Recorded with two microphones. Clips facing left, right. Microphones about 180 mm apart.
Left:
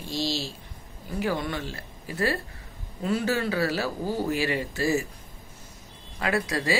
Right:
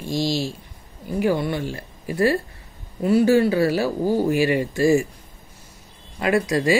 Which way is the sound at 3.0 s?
10° right (ahead or behind).